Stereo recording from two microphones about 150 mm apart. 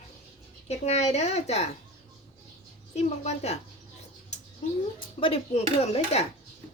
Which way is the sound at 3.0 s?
45° left (ahead or behind).